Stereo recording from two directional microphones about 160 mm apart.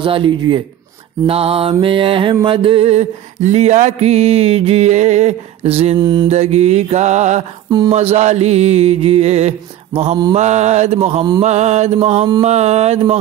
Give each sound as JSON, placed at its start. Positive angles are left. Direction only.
{"t": 0.0, "sound": "mantra", "side_deg": -30}
{"t": 5.9, "sound": "music", "side_deg": -25}
{"t": 6.2, "sound": "music", "side_deg": -40}
{"t": 7.9, "sound": "mantra", "side_deg": -40}
{"t": 10.3, "sound": "music", "side_deg": -45}